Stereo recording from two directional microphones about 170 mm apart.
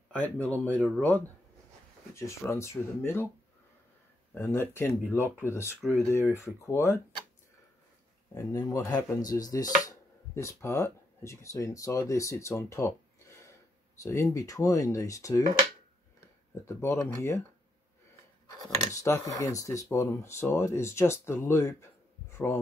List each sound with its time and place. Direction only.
0.1 s speech: 10° left (ahead or behind)
4.3 s speech: 15° left (ahead or behind)
5.2 s speech: 10° right (ahead or behind)
5.5 s speech: 15° left (ahead or behind)
8.4 s speech: 20° left (ahead or behind)
13.9 s speech: 15° left (ahead or behind)
16.6 s speech: 15° left (ahead or behind)
18.6 s speech: 20° left (ahead or behind)
22.3 s a sound: 15° left (ahead or behind)